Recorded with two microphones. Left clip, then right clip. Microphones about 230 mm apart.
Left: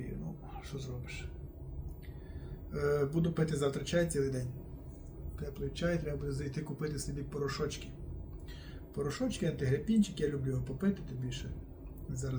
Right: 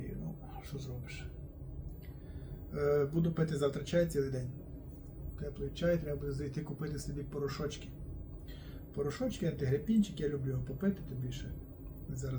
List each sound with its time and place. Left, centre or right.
0.8 s a man's voice: centre
2.7 s speech: centre
9.0 s speech: centre